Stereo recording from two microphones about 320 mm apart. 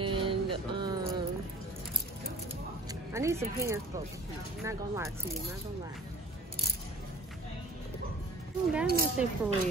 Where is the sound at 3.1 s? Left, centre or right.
Centre.